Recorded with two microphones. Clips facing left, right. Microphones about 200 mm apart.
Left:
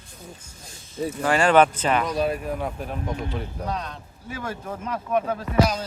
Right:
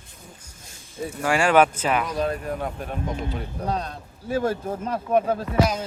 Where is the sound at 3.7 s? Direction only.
35° right (ahead or behind).